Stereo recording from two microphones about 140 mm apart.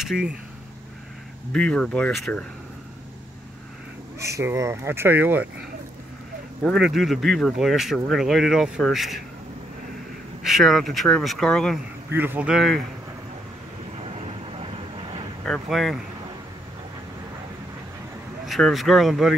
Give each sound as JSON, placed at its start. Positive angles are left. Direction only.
{"t": 0.0, "sound": "speech", "side_deg": -5}
{"t": 1.5, "sound": "speech", "side_deg": 5}
{"t": 4.2, "sound": "speech", "side_deg": -20}
{"t": 6.6, "sound": "speech", "side_deg": 0}
{"t": 10.4, "sound": "speech", "side_deg": 0}
{"t": 12.1, "sound": "speech", "side_deg": -15}
{"t": 14.0, "sound": "vehicle", "side_deg": -45}
{"t": 15.4, "sound": "speech", "side_deg": 0}
{"t": 18.4, "sound": "speech", "side_deg": 0}